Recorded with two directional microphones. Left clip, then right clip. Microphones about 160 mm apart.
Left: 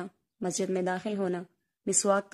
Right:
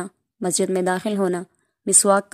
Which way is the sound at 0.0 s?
40° right (ahead or behind).